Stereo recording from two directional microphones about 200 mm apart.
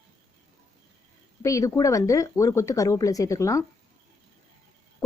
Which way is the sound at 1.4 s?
15° left (ahead or behind).